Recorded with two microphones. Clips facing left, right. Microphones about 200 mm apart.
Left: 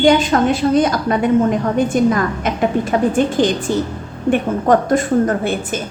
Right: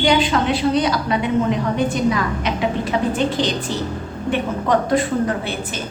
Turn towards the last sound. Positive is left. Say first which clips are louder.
# left 5 dB
turn(degrees=45)  # may be behind; listen again after turning